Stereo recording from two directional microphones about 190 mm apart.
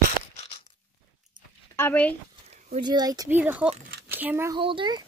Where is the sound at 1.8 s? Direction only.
10° left (ahead or behind).